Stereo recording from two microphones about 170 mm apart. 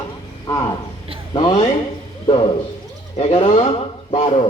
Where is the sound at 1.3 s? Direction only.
25° left (ahead or behind).